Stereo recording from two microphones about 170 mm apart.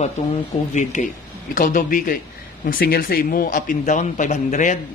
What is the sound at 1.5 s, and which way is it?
Speech, 50° left (ahead or behind).